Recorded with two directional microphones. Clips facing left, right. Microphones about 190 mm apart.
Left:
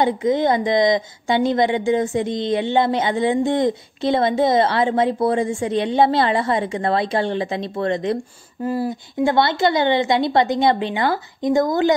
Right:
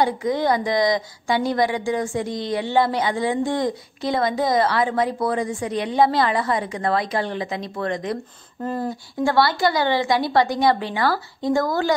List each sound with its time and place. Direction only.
0.0 s a woman's voice: 20° left (ahead or behind)
8.6 s speech: 10° left (ahead or behind)
9.2 s a woman's voice: 20° left (ahead or behind)